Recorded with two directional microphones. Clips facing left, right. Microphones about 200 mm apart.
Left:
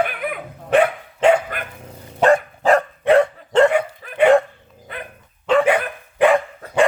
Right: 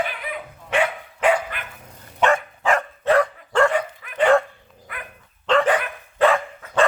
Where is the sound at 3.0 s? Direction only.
25° left (ahead or behind).